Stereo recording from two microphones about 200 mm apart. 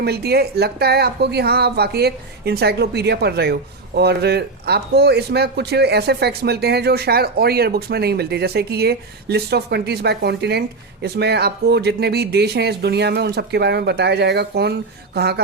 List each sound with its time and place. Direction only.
0.0 s speech: 55° right (ahead or behind)